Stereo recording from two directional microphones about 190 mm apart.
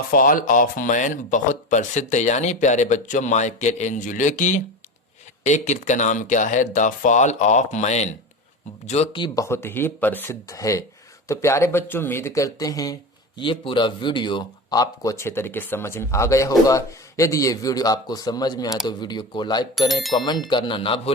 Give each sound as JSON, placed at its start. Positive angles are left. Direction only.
{"t": 0.1, "sound": "a man's voice", "side_deg": 45}
{"t": 19.9, "sound": "speech", "side_deg": 0}
{"t": 20.2, "sound": "a man's voice", "side_deg": 20}